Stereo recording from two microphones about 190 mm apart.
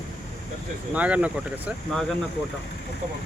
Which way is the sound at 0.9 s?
5° right (ahead or behind).